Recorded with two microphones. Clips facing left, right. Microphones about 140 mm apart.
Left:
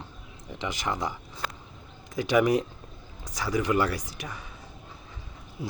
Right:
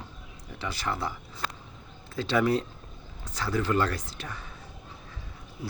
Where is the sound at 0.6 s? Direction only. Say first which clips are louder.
Left 1 dB; 15° left (ahead or behind).